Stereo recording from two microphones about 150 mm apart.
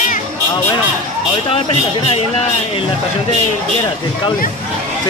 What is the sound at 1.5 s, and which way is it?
Speech, 40° left (ahead or behind).